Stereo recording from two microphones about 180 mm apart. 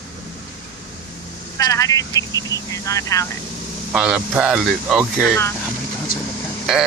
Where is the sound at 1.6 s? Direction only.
20° left (ahead or behind).